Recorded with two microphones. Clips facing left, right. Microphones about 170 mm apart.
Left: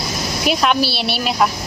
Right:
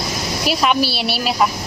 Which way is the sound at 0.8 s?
40° right (ahead or behind).